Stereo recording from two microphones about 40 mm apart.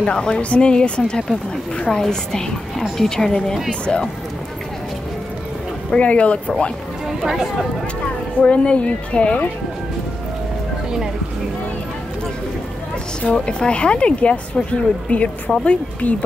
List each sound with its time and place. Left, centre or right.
0.0 s a woman's voice: left
5.9 s a woman's voice: left
7.1 s speech: centre
8.4 s speech: left
13.2 s a woman's voice: left